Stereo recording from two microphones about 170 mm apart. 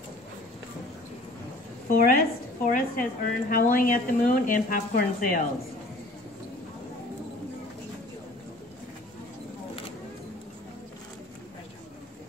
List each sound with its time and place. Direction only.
1.9 s a woman's voice: 55° left (ahead or behind)